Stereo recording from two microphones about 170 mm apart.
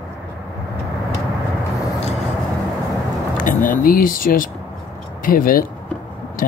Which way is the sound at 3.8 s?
55° left (ahead or behind).